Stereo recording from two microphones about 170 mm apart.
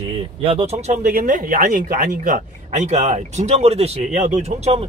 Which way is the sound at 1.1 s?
55° right (ahead or behind).